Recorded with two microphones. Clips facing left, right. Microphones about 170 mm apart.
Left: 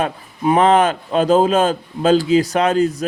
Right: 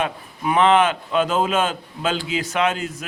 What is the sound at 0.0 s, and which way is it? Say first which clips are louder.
A man's voice: left 5 dB; 40° left (ahead or behind).